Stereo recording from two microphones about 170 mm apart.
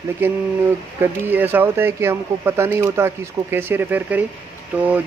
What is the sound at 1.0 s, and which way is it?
Speech, 10° right (ahead or behind).